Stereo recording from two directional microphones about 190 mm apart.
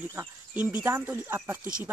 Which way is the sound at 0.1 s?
10° right (ahead or behind).